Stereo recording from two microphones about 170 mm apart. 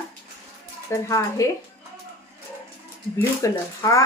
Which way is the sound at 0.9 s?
20° left (ahead or behind).